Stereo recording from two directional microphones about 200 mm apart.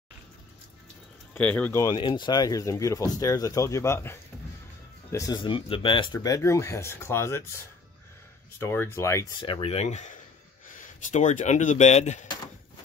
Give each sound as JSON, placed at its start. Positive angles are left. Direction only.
{"t": 1.3, "sound": "speech", "side_deg": 5}
{"t": 8.5, "sound": "speech", "side_deg": 10}
{"t": 9.4, "sound": "speech", "side_deg": 25}